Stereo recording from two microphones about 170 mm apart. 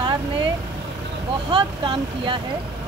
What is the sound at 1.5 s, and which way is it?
Speech, 30° right (ahead or behind).